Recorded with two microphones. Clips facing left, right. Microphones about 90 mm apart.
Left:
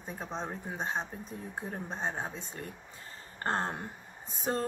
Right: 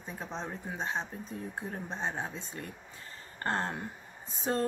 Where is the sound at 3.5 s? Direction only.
30° left (ahead or behind).